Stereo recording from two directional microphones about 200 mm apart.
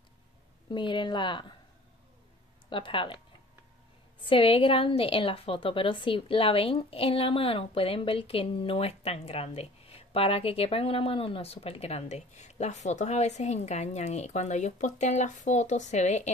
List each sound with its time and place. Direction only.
0.7 s a woman's voice: 25° left (ahead or behind)
2.7 s a woman's voice: 25° left (ahead or behind)
4.3 s a woman's voice: 25° left (ahead or behind)